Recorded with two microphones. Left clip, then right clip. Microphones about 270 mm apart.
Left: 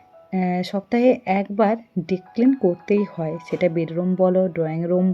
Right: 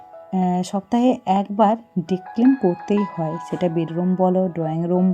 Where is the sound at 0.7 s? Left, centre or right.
Centre.